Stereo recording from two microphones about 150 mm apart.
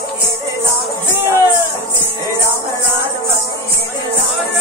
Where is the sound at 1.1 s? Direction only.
15° right (ahead or behind).